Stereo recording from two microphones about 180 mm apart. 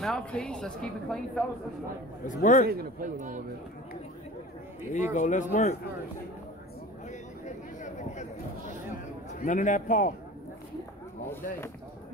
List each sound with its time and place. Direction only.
0.0 s a woman's voice: 5° left (ahead or behind)
2.2 s a man's voice: 45° left (ahead or behind)
2.7 s a man's voice: 50° right (ahead or behind)
4.9 s a man's voice: 45° left (ahead or behind)
7.1 s a sound: 40° left (ahead or behind)
9.3 s a man's voice: 45° left (ahead or behind)